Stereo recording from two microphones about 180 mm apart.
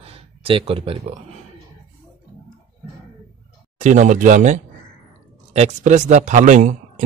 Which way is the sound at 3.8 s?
40° right (ahead or behind).